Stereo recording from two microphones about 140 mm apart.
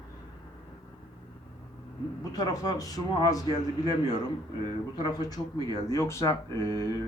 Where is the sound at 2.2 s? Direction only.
25° left (ahead or behind).